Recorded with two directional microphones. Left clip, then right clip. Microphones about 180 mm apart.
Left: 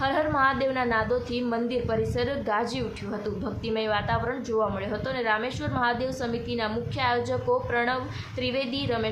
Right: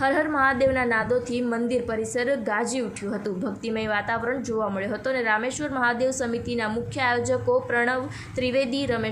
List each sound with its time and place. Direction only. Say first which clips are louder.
0.0 s a woman's voice: right 2 dB; 15° right (ahead or behind)